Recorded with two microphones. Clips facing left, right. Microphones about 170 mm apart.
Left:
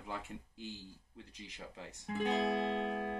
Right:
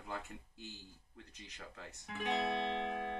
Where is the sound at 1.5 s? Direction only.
25° left (ahead or behind).